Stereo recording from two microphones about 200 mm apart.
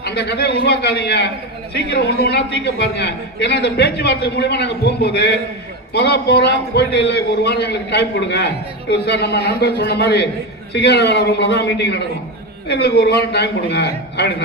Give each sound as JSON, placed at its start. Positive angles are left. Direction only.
{"t": 0.0, "sound": "a man's voice", "side_deg": 55}